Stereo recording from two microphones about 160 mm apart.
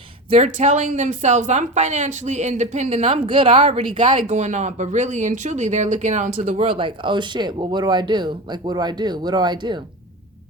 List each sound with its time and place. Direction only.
0.3 s a woman's voice: 45° right (ahead or behind)
4.3 s a woman's voice: 45° right (ahead or behind)
6.7 s speech: 35° right (ahead or behind)